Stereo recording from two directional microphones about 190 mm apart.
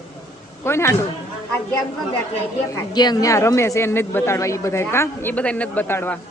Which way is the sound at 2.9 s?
20° left (ahead or behind).